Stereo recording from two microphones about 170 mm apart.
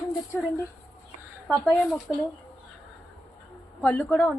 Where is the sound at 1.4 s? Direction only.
Centre (ahead or behind).